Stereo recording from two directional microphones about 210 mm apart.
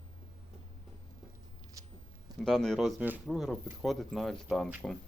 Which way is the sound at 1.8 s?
15° right (ahead or behind).